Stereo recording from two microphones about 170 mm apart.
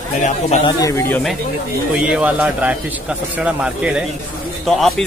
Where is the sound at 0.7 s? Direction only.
20° left (ahead or behind).